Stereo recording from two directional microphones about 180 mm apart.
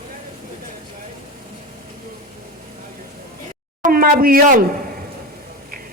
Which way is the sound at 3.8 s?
50° right (ahead or behind).